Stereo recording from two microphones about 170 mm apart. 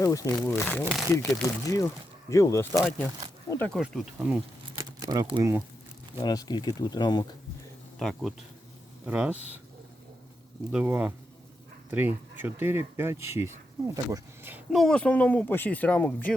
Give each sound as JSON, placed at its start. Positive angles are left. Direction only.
{"t": 0.0, "sound": "speech", "side_deg": 20}
{"t": 3.8, "sound": "speech", "side_deg": -5}
{"t": 4.8, "sound": "speech", "side_deg": -25}
{"t": 6.2, "sound": "speech", "side_deg": 25}
{"t": 7.9, "sound": "speech", "side_deg": 0}
{"t": 10.7, "sound": "speech", "side_deg": -5}
{"t": 14.8, "sound": "speech", "side_deg": 5}